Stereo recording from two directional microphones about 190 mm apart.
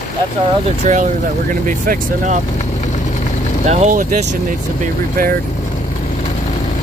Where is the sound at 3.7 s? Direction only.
40° right (ahead or behind).